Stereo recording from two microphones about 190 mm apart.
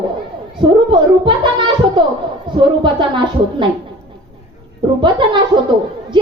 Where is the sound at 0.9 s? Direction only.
25° right (ahead or behind).